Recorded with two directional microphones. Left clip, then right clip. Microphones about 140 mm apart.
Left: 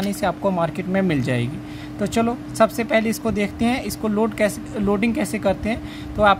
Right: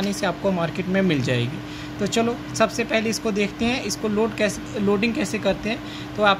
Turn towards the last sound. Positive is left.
turn(degrees=70)  # may be behind; listen again after turning